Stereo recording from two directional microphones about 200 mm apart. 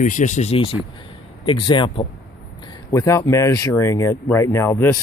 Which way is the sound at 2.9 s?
15° left (ahead or behind).